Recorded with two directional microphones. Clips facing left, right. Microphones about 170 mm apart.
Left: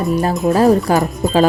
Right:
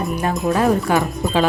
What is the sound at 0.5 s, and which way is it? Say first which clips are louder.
Music: left 5 dB; 35° left (ahead or behind).